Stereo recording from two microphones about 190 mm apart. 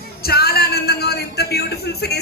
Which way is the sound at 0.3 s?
55° left (ahead or behind).